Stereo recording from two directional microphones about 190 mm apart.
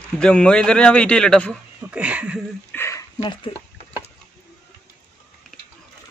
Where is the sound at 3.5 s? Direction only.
25° left (ahead or behind).